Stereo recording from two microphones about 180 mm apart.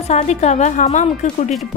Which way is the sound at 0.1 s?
40° left (ahead or behind).